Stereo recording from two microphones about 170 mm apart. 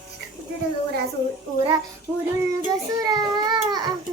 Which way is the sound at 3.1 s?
25° right (ahead or behind).